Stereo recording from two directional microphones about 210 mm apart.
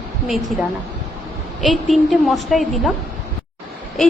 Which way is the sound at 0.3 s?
Centre (ahead or behind).